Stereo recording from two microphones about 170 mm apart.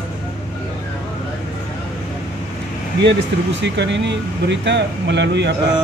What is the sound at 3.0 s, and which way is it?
Speech, 90° right.